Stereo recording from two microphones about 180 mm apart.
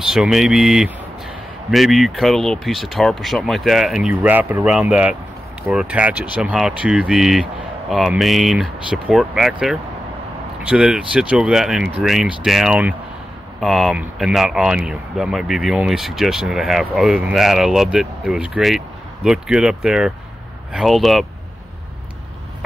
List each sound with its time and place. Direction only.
0.0 s speech: centre (ahead or behind)